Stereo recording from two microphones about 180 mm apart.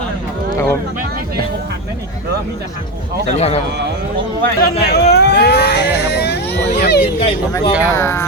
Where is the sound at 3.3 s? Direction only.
35° left (ahead or behind).